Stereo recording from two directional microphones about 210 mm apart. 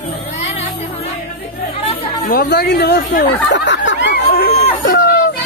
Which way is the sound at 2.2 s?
50° left (ahead or behind).